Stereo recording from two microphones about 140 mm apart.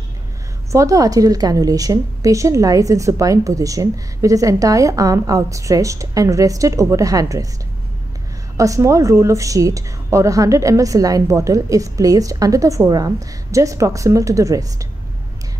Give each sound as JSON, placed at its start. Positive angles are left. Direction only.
{"t": 0.7, "sound": "a woman's voice", "side_deg": -25}
{"t": 8.5, "sound": "a woman's voice", "side_deg": -25}